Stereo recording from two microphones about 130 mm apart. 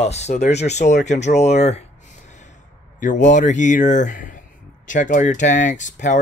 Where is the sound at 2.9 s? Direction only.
75° left (ahead or behind).